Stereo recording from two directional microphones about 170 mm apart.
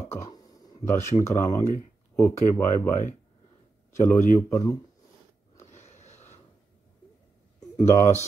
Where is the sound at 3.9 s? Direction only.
15° left (ahead or behind).